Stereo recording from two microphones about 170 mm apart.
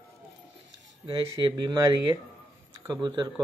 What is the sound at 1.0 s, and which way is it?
Speech, 30° right (ahead or behind).